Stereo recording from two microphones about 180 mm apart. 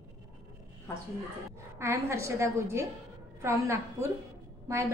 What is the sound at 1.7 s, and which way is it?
A woman's voice, 15° right (ahead or behind).